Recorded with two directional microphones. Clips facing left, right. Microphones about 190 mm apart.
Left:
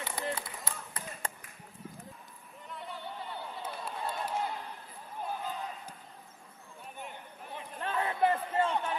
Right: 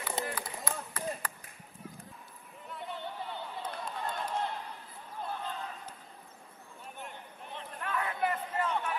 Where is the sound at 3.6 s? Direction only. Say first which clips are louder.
Even; 10° left (ahead or behind).